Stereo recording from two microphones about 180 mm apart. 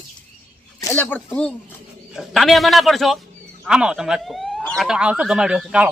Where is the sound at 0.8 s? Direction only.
15° left (ahead or behind).